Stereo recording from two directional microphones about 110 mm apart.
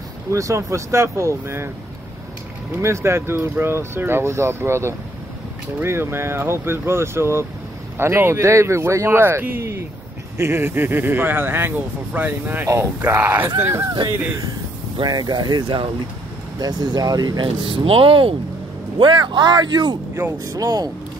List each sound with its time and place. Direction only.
0.3 s speech: 30° right (ahead or behind)
2.8 s speech: 25° right (ahead or behind)
15.0 s speech: 35° right (ahead or behind)